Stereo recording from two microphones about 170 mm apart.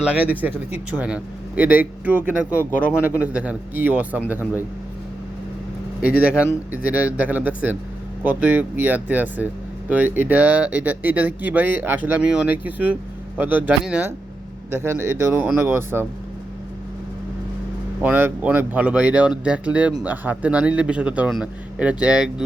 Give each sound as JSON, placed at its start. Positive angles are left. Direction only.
{"t": 0.0, "sound": "speech", "side_deg": -10}
{"t": 6.0, "sound": "speech", "side_deg": -5}
{"t": 18.0, "sound": "speech", "side_deg": -10}